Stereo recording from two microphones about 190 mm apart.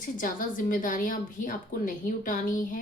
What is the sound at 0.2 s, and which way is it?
A woman's voice, 45° left (ahead or behind).